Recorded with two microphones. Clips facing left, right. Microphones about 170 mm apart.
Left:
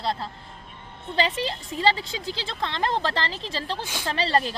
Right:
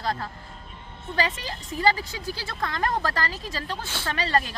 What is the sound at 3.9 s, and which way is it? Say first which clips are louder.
Speech: left 1 dB; 15° left (ahead or behind).